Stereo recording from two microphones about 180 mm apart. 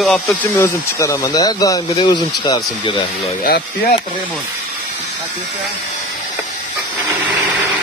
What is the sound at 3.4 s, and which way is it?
Speech, 55° left (ahead or behind).